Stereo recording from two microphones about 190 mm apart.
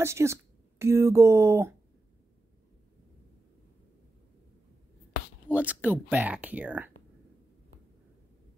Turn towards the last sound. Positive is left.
turn(degrees=-10)  # may be behind; listen again after turning